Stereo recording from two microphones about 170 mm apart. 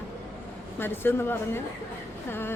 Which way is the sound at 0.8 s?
15° left (ahead or behind).